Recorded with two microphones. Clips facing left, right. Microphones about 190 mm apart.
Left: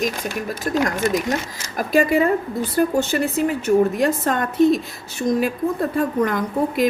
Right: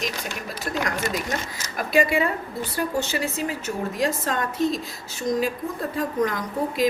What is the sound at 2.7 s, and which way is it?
A woman's voice, 55° left (ahead or behind).